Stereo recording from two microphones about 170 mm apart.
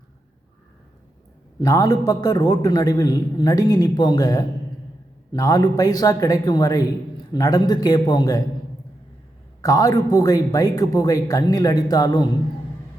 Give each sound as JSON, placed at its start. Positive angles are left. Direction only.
{"t": 1.6, "sound": "a man's voice", "side_deg": 20}
{"t": 9.6, "sound": "a man's voice", "side_deg": 20}